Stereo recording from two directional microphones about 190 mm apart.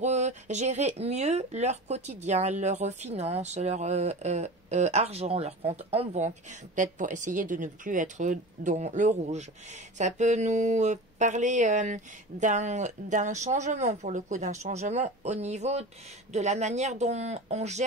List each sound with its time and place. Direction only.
0.0 s speech: 35° right (ahead or behind)